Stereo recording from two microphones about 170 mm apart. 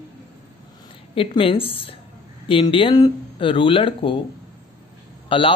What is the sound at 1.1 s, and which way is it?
Speech, 30° left (ahead or behind).